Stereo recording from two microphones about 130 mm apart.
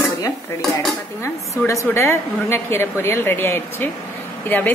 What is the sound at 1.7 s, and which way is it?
A woman's voice, 20° left (ahead or behind).